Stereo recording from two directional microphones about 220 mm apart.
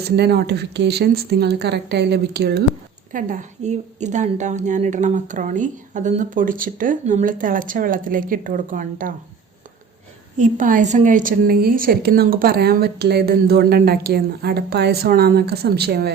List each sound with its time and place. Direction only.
0.0 s a woman's voice: 45° right (ahead or behind)
10.4 s a woman's voice: 35° right (ahead or behind)